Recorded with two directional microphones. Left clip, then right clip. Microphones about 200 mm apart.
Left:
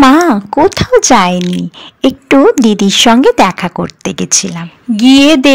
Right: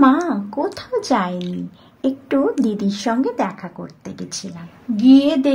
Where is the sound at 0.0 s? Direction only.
25° left (ahead or behind).